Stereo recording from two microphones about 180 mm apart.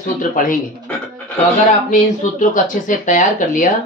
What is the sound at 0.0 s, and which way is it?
Speech, 45° left (ahead or behind).